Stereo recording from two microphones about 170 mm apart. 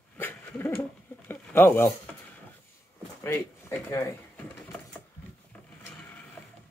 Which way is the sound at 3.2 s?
15° left (ahead or behind).